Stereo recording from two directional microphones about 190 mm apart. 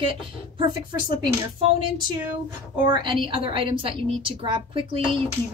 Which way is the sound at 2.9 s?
25° right (ahead or behind).